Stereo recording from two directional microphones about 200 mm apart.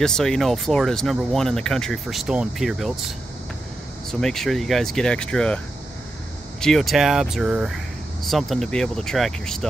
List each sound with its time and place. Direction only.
0.0 s speech: 5° left (ahead or behind)
4.1 s speech: centre (ahead or behind)
6.6 s speech: centre (ahead or behind)